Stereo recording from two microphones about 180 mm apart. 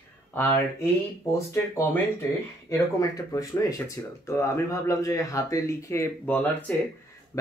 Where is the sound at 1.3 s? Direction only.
15° left (ahead or behind).